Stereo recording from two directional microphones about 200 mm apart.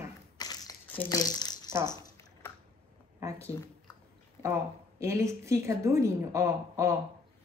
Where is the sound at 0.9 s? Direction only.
15° left (ahead or behind).